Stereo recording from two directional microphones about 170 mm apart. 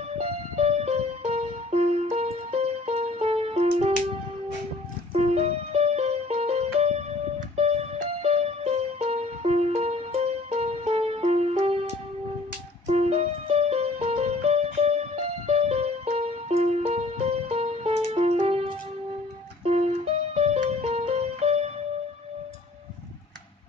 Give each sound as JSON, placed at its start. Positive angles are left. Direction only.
{"t": 0.2, "sound": "music", "side_deg": -40}
{"t": 5.1, "sound": "music", "side_deg": -40}
{"t": 12.8, "sound": "music", "side_deg": -35}
{"t": 20.3, "sound": "music", "side_deg": -40}